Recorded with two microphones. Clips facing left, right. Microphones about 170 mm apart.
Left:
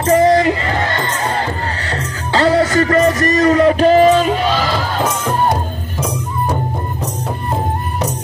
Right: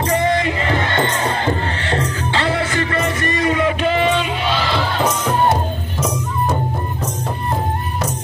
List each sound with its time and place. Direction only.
0.0 s speech: 40° left (ahead or behind)
2.3 s music: 40° left (ahead or behind)